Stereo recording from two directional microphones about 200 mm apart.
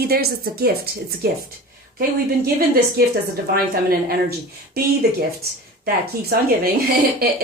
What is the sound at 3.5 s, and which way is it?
Speech, 50° right (ahead or behind).